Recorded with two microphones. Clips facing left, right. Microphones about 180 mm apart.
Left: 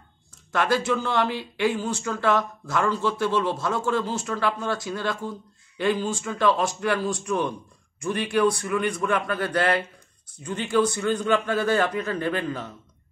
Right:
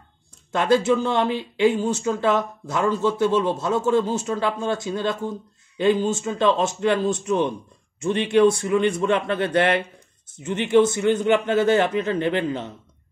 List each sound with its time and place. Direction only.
0.5 s speech: 25° right (ahead or behind)